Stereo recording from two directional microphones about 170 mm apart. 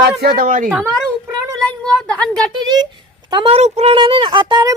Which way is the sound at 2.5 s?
25° right (ahead or behind).